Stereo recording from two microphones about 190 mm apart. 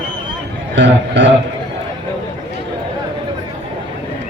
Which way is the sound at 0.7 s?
70° right (ahead or behind).